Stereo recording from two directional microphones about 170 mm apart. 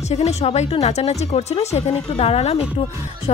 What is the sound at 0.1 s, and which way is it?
Speech, 40° left (ahead or behind).